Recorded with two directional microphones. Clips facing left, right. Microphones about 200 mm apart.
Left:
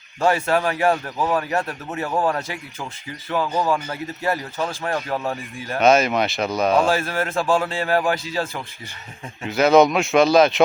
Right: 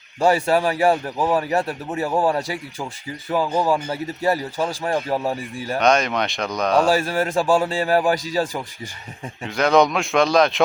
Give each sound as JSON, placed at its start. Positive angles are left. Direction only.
{"t": 0.4, "sound": "speech", "side_deg": -10}
{"t": 5.8, "sound": "speech", "side_deg": 5}
{"t": 6.8, "sound": "speech", "side_deg": -15}
{"t": 9.4, "sound": "speech", "side_deg": 5}